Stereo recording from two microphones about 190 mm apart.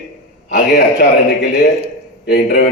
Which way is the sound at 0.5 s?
60° left (ahead or behind).